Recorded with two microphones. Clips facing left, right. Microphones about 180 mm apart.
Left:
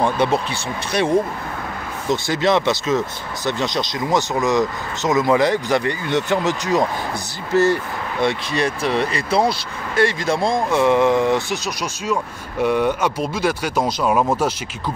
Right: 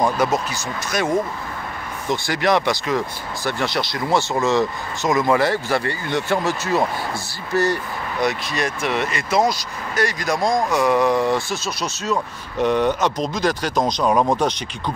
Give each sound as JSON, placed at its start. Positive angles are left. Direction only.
{"t": 0.2, "sound": "speech", "side_deg": 30}
{"t": 2.0, "sound": "speech", "side_deg": 20}
{"t": 8.2, "sound": "speech", "side_deg": 30}